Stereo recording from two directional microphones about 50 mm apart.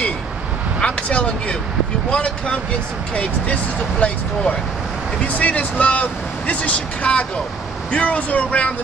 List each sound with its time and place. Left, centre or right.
0.7 s speech: left
4.0 s speech: left
5.2 s speech: left